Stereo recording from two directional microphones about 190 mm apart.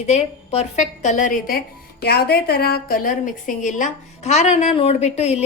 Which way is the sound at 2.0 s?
55° left (ahead or behind).